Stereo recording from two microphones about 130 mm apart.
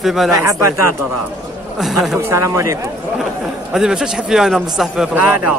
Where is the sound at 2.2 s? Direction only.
25° right (ahead or behind).